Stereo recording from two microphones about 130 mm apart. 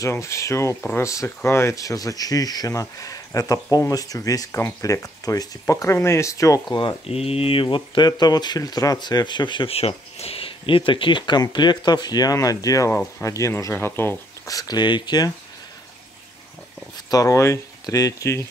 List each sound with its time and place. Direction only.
0.0 s speech: 20° left (ahead or behind)
6.8 s speech: 45° left (ahead or behind)
17.1 s speech: 25° left (ahead or behind)